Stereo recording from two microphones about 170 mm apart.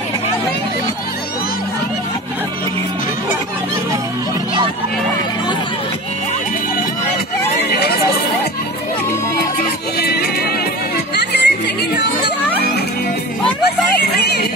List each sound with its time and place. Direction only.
9.9 s music: 70° left (ahead or behind)
11.1 s children playing: 80° left
14.0 s music: 70° left (ahead or behind)